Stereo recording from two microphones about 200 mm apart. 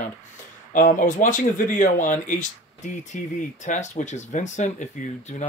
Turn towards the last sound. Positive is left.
turn(degrees=35)  # may be behind; listen again after turning